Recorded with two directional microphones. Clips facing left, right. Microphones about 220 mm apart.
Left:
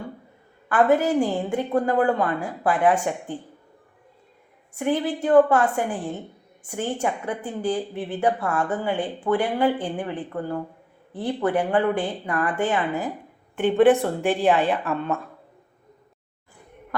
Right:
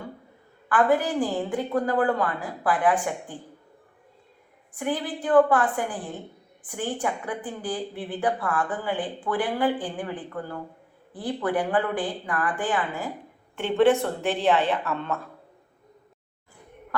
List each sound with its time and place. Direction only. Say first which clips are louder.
0.7 s a woman's voice: left 3 dB; 25° left (ahead or behind)
4.7 s a woman's voice: left 5 dB; 25° left (ahead or behind)